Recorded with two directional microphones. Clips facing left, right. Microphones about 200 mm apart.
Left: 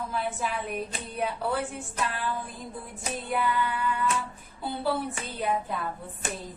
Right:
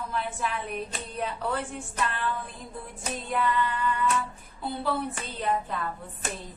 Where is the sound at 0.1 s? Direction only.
5° left (ahead or behind).